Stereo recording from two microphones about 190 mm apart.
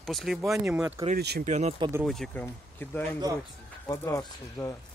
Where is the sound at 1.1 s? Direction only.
55° right (ahead or behind).